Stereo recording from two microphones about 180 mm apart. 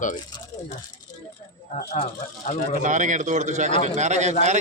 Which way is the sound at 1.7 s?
40° left (ahead or behind).